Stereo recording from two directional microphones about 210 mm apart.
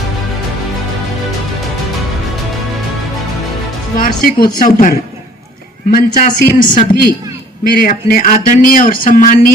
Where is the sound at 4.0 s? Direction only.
45° left (ahead or behind).